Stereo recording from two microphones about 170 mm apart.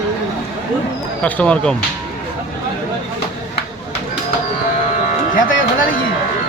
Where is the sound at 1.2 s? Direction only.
5° left (ahead or behind).